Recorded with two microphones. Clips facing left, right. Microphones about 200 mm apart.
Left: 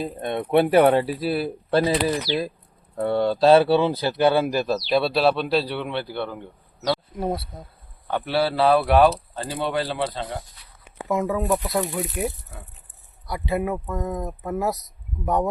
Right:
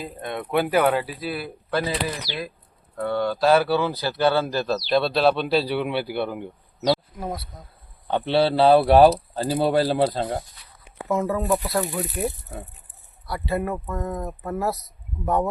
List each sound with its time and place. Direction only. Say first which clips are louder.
0.0 s a man's voice: left 4 dB; 25° left (ahead or behind); by 7.0 s 15° right (ahead or behind)
7.2 s speech: left 5 dB; 30° left (ahead or behind)
8.0 s speech: right 3 dB; 25° right (ahead or behind); by 10.4 s 40° right (ahead or behind)
11.2 s a man's voice: even; centre (ahead or behind)
13.2 s speech: left 1 dB; 20° left (ahead or behind)